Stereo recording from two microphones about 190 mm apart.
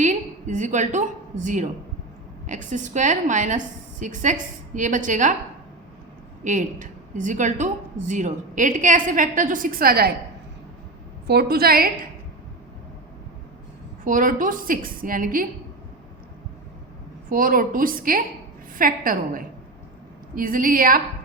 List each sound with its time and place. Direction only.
0.0 s a woman's voice: 40° right (ahead or behind)
6.4 s a woman's voice: 40° right (ahead or behind)
11.3 s a woman's voice: 55° right (ahead or behind)
14.0 s a woman's voice: 45° right (ahead or behind)
17.2 s a woman's voice: 45° right (ahead or behind)